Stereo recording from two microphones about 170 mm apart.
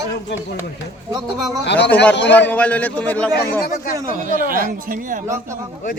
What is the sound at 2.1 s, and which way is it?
Speech, 90° left.